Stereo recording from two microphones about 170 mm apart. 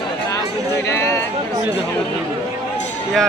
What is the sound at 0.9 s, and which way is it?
Speech, 15° left (ahead or behind).